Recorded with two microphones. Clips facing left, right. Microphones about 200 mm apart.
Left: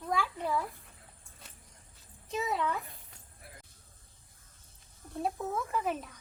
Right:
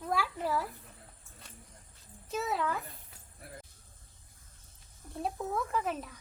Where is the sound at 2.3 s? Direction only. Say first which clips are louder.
Even; centre (ahead or behind).